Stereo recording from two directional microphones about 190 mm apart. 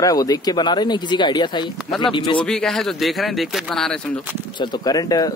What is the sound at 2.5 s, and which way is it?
Speech, 5° left (ahead or behind).